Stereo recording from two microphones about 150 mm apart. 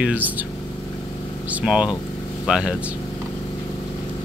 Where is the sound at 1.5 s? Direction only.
10° right (ahead or behind).